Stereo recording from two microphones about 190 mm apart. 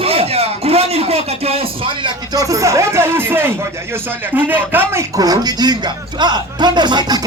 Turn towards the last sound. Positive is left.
turn(degrees=-20)  # may be behind; listen again after turning